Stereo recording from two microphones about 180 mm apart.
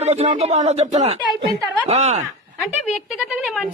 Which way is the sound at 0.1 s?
40° right (ahead or behind).